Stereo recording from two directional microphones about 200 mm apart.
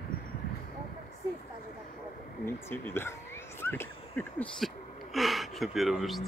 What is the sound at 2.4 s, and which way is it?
Speech, 10° left (ahead or behind).